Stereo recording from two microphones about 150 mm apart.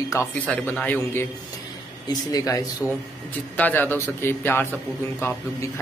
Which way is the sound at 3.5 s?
10° left (ahead or behind).